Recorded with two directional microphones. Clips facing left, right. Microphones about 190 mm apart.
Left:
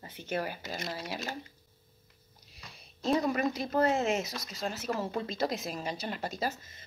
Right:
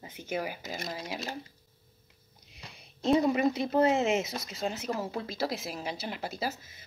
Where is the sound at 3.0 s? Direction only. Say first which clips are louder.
Right 4 dB; 25° right (ahead or behind).